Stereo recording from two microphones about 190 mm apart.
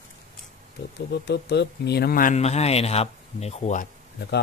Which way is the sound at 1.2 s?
65° left (ahead or behind).